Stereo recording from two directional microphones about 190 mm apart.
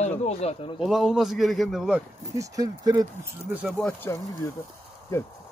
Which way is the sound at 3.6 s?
5° left (ahead or behind).